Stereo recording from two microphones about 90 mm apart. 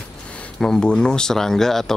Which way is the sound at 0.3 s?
10° left (ahead or behind).